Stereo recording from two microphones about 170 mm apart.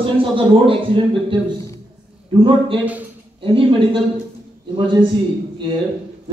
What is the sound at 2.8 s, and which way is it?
Speech, 10° right (ahead or behind).